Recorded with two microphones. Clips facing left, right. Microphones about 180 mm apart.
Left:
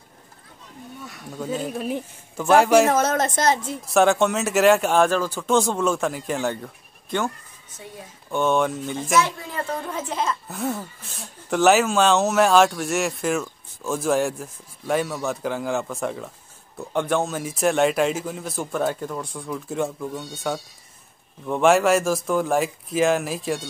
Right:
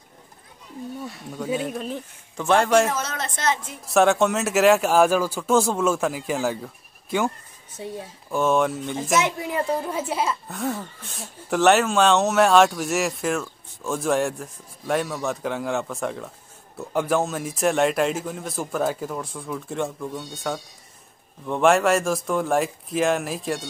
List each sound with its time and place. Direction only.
1.5 s speech: centre (ahead or behind)
2.9 s a woman's voice: 50° left (ahead or behind)
3.8 s speech: centre (ahead or behind)
8.3 s speech: centre (ahead or behind)
9.1 s a child's voice: 20° right (ahead or behind)
10.5 s speech: centre (ahead or behind)